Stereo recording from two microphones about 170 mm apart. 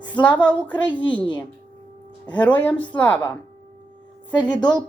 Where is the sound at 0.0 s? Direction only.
10° left (ahead or behind).